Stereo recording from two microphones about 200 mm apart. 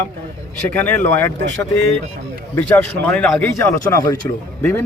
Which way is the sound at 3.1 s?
5° left (ahead or behind).